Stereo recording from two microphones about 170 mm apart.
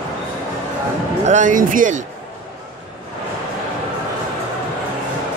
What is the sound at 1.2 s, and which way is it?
Speech, 45° right (ahead or behind).